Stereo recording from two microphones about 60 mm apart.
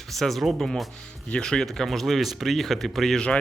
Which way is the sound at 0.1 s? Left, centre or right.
Centre.